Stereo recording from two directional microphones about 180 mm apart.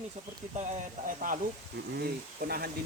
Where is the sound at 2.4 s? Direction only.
60° right (ahead or behind).